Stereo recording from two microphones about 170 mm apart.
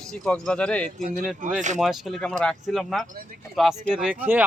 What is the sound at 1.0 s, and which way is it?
Speech, 55° right (ahead or behind).